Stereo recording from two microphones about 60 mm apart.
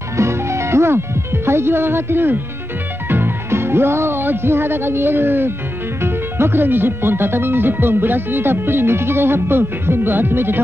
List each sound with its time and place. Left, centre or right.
0.2 s music: right
3.1 s speech: right